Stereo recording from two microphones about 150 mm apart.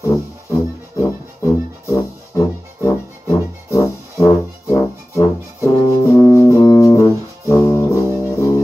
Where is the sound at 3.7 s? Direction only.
20° left (ahead or behind).